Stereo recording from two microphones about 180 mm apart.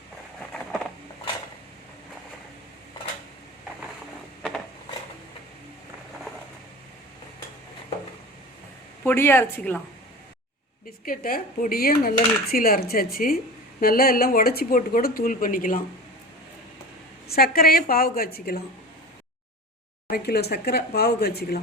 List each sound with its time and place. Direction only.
9.0 s speech: 15° left (ahead or behind)
11.0 s dishes: 55° left (ahead or behind)
17.2 s dishes: 60° left (ahead or behind)
20.1 s dishes: 60° left (ahead or behind)